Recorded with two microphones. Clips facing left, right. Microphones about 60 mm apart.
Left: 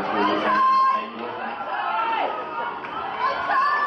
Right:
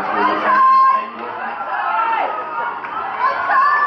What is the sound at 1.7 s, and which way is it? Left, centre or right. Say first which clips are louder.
Crowd: right 6 dB; right.